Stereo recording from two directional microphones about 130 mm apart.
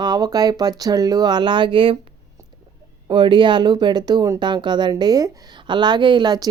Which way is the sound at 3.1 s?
40° right (ahead or behind).